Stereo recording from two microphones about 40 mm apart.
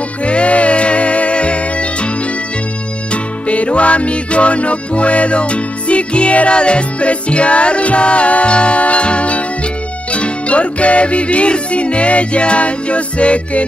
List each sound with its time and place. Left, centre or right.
0.2 s music: left
3.1 s music: left